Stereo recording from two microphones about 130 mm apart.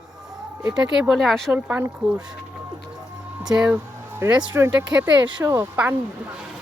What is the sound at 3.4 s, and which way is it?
Speech, 5° right (ahead or behind).